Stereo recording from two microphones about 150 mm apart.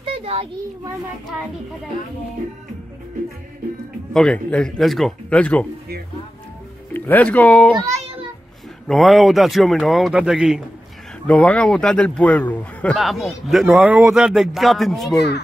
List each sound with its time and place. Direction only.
0.0 s children playing: 40° right (ahead or behind)
4.1 s speech: 5° left (ahead or behind)
6.9 s speech: 10° left (ahead or behind); by 10.6 s 5° right (ahead or behind)
11.2 s speech: 10° left (ahead or behind)